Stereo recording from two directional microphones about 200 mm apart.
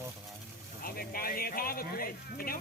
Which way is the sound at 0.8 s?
50° left (ahead or behind).